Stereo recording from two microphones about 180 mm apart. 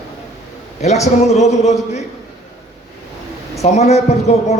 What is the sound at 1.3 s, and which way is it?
Speech, 40° left (ahead or behind).